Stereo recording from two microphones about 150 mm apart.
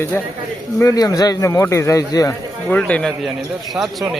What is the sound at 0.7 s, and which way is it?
A man's voice, 20° left (ahead or behind).